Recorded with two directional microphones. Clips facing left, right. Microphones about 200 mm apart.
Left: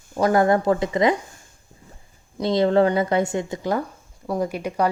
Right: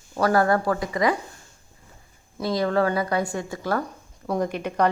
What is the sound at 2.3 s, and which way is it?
Speech, 25° left (ahead or behind).